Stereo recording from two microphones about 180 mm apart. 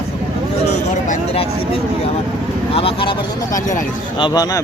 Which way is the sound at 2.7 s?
30° left (ahead or behind).